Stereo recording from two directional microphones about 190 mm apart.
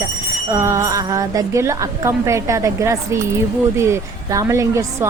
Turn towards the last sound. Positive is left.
turn(degrees=-15)  # may be behind; listen again after turning